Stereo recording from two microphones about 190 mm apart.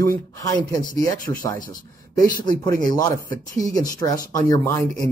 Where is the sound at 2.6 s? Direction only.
20° left (ahead or behind).